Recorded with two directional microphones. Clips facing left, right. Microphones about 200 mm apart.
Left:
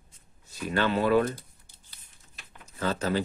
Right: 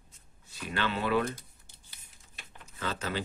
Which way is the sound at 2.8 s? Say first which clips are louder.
Left 7 dB; 40° left (ahead or behind).